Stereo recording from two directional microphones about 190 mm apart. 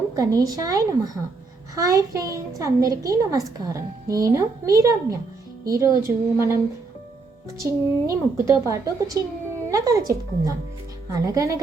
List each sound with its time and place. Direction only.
0.1 s a woman's voice: 20° right (ahead or behind)
7.6 s a woman's voice: 15° right (ahead or behind)